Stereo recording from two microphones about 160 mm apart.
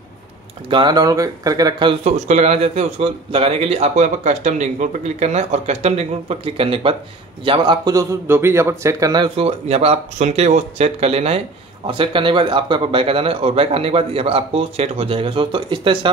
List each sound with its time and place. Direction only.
0.7 s speech: 30° right (ahead or behind)
2.0 s a man's voice: 45° right (ahead or behind); by 9.3 s 25° right (ahead or behind)
9.4 s speech: 40° right (ahead or behind)